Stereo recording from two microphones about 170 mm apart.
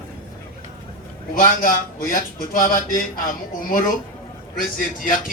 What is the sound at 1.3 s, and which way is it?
A man's voice, 55° left (ahead or behind).